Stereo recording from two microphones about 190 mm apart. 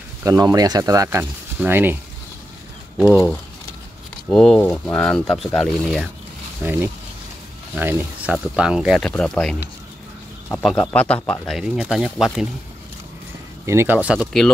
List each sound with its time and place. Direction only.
0.2 s speech: 15° right (ahead or behind)
3.1 s speech: 10° left (ahead or behind)
6.6 s speech: 10° right (ahead or behind)
13.7 s speech: 10° right (ahead or behind)